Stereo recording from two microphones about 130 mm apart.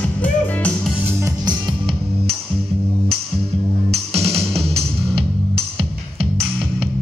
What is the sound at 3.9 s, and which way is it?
Music, 50° right (ahead or behind).